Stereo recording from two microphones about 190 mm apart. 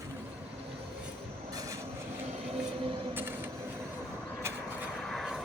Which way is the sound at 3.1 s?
10° right (ahead or behind).